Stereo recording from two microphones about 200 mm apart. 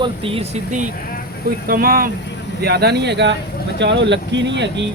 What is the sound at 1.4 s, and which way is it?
Speech, 45° right (ahead or behind).